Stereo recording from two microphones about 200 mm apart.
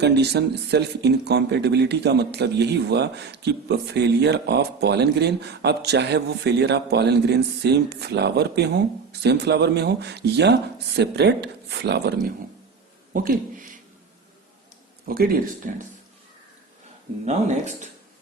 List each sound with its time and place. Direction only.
0.0 s speech: 55° right (ahead or behind)
13.1 s speech: 45° right (ahead or behind)
15.0 s speech: 45° right (ahead or behind)